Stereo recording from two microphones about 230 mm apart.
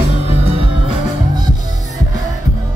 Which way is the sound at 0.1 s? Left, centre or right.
Right.